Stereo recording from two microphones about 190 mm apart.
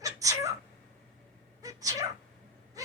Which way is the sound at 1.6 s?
20° right (ahead or behind).